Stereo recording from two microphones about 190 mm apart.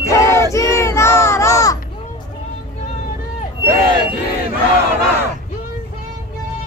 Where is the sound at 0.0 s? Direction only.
15° left (ahead or behind).